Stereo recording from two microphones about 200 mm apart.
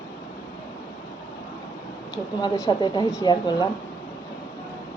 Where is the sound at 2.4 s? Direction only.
20° left (ahead or behind).